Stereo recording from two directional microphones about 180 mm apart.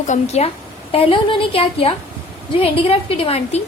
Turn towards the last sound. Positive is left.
turn(degrees=35)  # may be behind; listen again after turning